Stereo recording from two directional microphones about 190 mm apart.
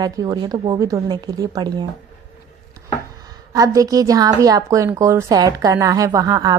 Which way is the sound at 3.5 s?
20° right (ahead or behind).